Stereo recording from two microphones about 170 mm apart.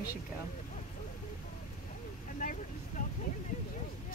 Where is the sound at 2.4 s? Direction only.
50° left (ahead or behind).